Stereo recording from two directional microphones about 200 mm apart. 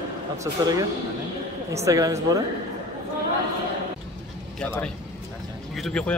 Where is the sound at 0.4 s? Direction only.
15° right (ahead or behind).